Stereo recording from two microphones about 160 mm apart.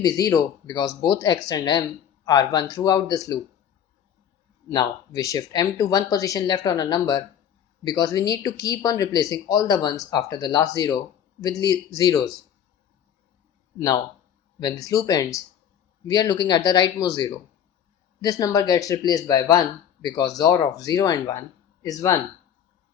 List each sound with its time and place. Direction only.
0.0 s speech: 20° left (ahead or behind)
4.7 s speech: 25° left (ahead or behind)
13.7 s speech: 25° left (ahead or behind)